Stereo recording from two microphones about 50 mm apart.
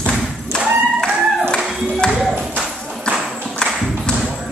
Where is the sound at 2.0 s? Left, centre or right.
Centre.